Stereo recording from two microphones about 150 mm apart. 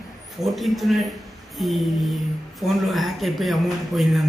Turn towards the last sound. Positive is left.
turn(degrees=0)  # may be behind; listen again after turning